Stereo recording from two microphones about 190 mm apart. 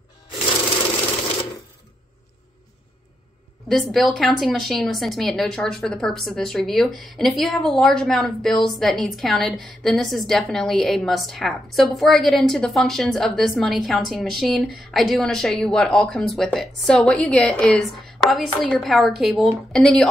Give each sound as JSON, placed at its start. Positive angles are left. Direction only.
{"t": 0.9, "sound": "typewriter", "side_deg": 30}
{"t": 3.6, "sound": "a woman's voice", "side_deg": 0}